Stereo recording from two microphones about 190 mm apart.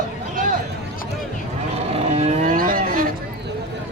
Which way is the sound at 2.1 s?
35° right (ahead or behind).